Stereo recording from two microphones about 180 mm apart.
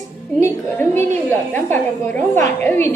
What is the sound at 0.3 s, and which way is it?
A woman's voice, 15° left (ahead or behind).